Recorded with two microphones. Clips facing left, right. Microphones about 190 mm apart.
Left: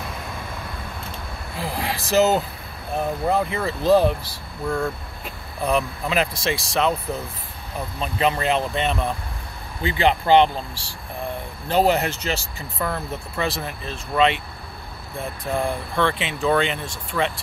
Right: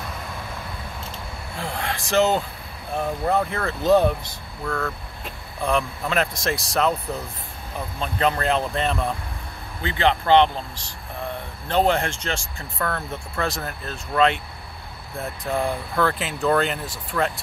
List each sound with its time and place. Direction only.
1.6 s vehicle: 5° left (ahead or behind)
2.1 s speech: 5° left (ahead or behind)
4.3 s speech: 25° left (ahead or behind)
5.2 s speech: 5° left (ahead or behind)
8.0 s speech: 5° left (ahead or behind)